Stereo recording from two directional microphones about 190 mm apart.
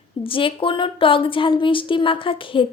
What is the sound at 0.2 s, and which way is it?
A woman's voice, 30° left (ahead or behind).